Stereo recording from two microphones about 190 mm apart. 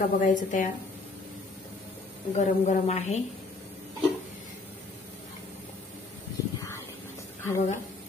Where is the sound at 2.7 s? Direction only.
35° left (ahead or behind).